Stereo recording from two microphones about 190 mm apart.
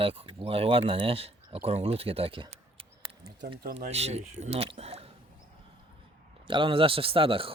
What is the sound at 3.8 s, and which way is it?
Speech, 35° right (ahead or behind).